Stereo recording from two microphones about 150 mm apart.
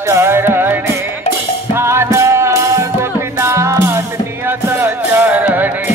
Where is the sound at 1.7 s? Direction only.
15° right (ahead or behind).